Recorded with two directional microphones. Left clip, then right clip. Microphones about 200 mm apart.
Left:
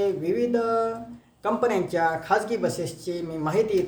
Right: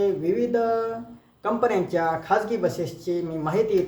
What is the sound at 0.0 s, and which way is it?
Speech, 10° left (ahead or behind).